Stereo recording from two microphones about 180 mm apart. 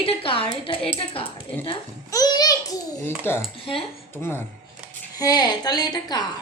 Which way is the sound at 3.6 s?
30° left (ahead or behind).